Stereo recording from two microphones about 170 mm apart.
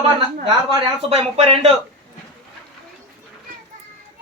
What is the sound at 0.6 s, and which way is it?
Speech, 35° right (ahead or behind).